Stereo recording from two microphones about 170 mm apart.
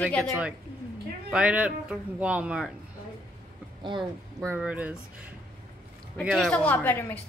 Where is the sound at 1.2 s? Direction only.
5° right (ahead or behind).